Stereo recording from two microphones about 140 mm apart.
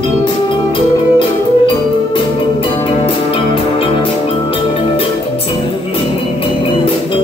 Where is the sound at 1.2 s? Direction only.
35° left (ahead or behind).